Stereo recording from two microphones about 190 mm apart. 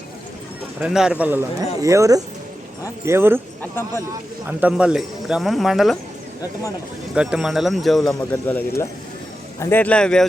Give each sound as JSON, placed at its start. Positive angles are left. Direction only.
{"t": 0.8, "sound": "speech", "side_deg": -5}
{"t": 3.6, "sound": "a man's voice", "side_deg": 10}
{"t": 4.4, "sound": "speech", "side_deg": -5}
{"t": 7.1, "sound": "a man's voice", "side_deg": -5}